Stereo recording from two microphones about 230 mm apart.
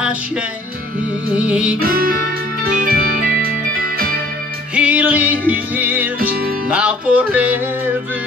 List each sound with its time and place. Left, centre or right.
1.3 s music: centre
1.8 s music: right
4.7 s music: centre